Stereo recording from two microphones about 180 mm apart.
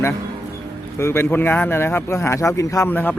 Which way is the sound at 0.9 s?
15° left (ahead or behind).